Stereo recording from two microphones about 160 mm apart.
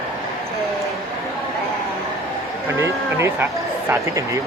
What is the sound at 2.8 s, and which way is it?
Speech, 15° right (ahead or behind).